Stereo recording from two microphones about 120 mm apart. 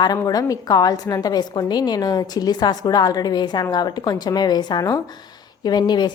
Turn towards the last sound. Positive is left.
turn(degrees=35)  # may be behind; listen again after turning